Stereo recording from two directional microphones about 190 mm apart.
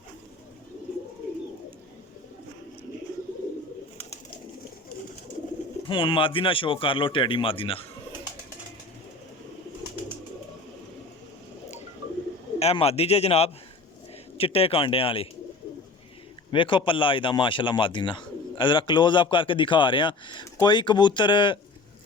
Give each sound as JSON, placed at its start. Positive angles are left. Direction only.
{"t": 5.9, "sound": "speech", "side_deg": 25}
{"t": 12.5, "sound": "a man's voice", "side_deg": 35}
{"t": 16.5, "sound": "speech", "side_deg": 25}